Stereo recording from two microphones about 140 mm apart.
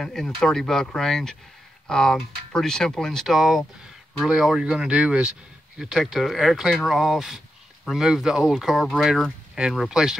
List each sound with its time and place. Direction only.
0.0 s speech: 5° left (ahead or behind)